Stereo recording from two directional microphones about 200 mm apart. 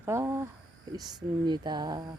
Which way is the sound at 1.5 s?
20° right (ahead or behind).